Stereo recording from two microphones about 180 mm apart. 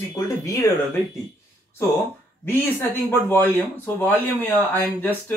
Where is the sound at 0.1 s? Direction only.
15° left (ahead or behind).